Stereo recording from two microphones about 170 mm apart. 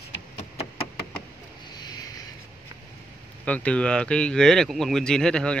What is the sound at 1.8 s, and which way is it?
Vehicle, 25° left (ahead or behind).